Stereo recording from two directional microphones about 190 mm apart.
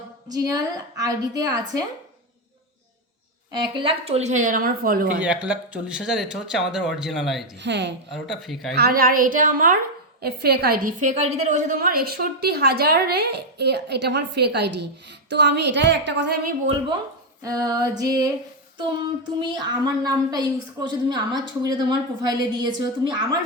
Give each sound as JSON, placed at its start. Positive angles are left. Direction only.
{"t": 0.3, "sound": "a woman's voice", "side_deg": -20}
{"t": 3.5, "sound": "speech", "side_deg": -25}
{"t": 5.2, "sound": "speech", "side_deg": -5}
{"t": 7.6, "sound": "a woman's voice", "side_deg": -70}
{"t": 8.1, "sound": "speech", "side_deg": 0}
{"t": 8.7, "sound": "a woman's voice", "side_deg": -55}
{"t": 10.2, "sound": "a woman's voice", "side_deg": -55}
{"t": 17.4, "sound": "a woman's voice", "side_deg": -20}